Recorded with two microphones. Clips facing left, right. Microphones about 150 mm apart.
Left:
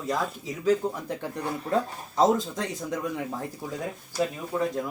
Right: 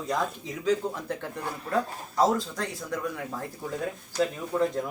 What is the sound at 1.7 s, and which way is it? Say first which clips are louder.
Speech: even; 20° left (ahead or behind).